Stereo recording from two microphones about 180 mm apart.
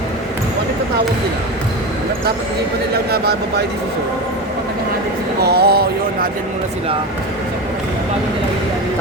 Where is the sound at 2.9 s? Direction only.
60° right (ahead or behind).